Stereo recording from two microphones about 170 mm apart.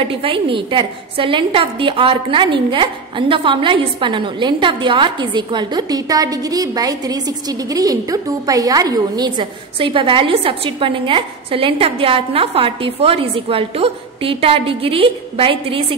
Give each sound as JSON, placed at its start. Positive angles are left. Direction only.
{"t": 0.1, "sound": "a woman's voice", "side_deg": -30}